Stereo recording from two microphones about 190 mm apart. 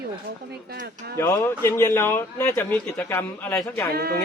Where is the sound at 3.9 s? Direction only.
55° right (ahead or behind).